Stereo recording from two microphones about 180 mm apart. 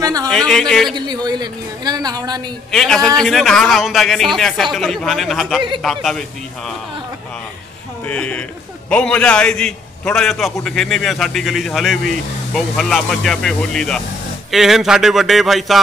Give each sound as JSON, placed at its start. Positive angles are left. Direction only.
{"t": 0.0, "sound": "a sound", "side_deg": -20}
{"t": 0.3, "sound": "a man's voice", "side_deg": 5}
{"t": 0.9, "sound": "a woman's voice", "side_deg": -25}
{"t": 2.7, "sound": "a man's voice", "side_deg": 5}
{"t": 8.1, "sound": "a man's voice", "side_deg": 5}